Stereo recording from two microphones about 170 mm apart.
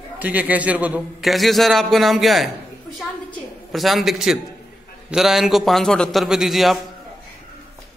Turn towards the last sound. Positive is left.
turn(degrees=0)  # may be behind; listen again after turning